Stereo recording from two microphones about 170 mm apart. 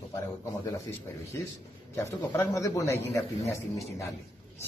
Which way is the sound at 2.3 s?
20° left (ahead or behind).